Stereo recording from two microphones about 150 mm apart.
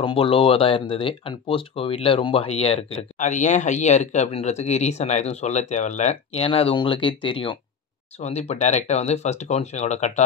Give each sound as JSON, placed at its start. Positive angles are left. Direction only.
{"t": 0.0, "sound": "speech", "side_deg": 35}
{"t": 8.2, "sound": "speech", "side_deg": 45}